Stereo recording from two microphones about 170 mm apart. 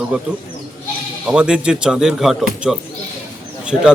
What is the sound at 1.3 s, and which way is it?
Speech, 5° right (ahead or behind).